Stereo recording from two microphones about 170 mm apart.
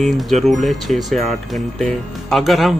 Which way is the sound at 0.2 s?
Centre (ahead or behind).